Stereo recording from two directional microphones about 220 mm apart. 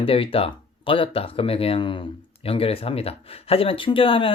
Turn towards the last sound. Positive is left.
turn(degrees=25)  # may be behind; listen again after turning